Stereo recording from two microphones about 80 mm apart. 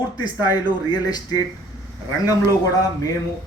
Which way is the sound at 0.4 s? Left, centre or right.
Left.